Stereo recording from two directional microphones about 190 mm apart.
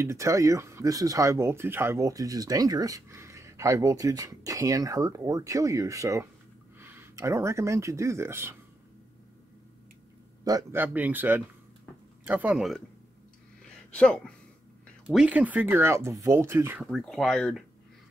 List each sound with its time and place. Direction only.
0.0 s speech: 15° right (ahead or behind)
10.4 s speech: 15° right (ahead or behind)
13.9 s speech: 5° left (ahead or behind)
15.0 s speech: 5° right (ahead or behind)
16.8 s speech: centre (ahead or behind)